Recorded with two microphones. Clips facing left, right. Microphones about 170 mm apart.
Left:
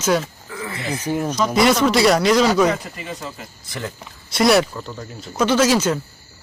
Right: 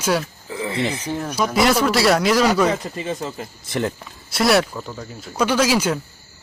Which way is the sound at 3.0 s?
25° right (ahead or behind).